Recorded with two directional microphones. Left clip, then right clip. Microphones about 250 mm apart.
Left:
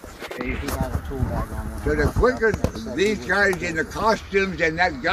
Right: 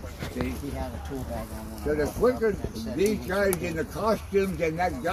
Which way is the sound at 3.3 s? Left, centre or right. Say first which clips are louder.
Left 6 dB; right.